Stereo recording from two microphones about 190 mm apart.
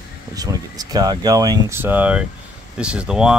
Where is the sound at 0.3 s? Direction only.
20° right (ahead or behind).